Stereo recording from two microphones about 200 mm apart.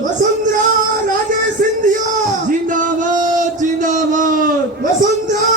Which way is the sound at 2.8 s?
40° right (ahead or behind).